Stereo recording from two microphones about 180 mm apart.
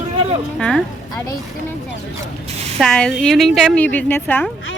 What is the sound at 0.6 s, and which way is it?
Speech, 5° left (ahead or behind).